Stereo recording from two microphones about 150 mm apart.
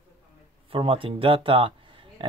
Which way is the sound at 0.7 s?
35° right (ahead or behind).